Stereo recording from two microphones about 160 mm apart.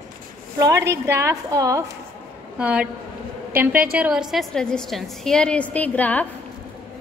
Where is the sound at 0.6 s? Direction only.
20° right (ahead or behind).